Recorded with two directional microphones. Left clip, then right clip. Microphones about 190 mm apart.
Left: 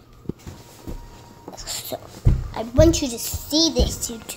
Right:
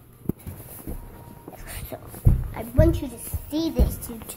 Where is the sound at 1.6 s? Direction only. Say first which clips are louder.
Left 9 dB; 15° left (ahead or behind).